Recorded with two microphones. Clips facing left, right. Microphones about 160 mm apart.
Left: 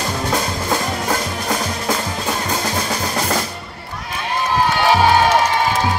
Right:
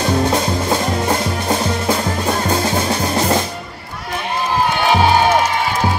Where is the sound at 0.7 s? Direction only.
25° right (ahead or behind).